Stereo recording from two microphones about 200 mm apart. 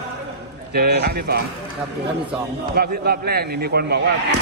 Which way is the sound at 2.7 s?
50° right (ahead or behind).